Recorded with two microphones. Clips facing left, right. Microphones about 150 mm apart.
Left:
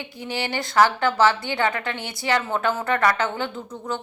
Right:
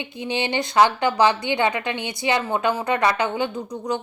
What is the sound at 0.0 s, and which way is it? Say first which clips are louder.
A woman's voice: right 3 dB; 20° right (ahead or behind).